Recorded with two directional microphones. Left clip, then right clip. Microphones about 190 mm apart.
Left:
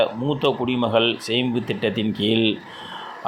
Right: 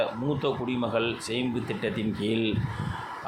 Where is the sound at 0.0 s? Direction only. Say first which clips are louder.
Left 7 dB; 25° left (ahead or behind).